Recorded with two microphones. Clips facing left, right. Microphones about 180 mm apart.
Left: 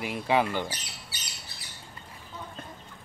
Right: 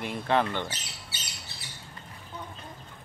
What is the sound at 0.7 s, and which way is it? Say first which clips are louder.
Speech: left 1 dB; 25° right (ahead or behind).